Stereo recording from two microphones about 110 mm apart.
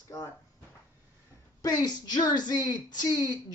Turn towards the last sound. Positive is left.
turn(degrees=40)  # may be behind; listen again after turning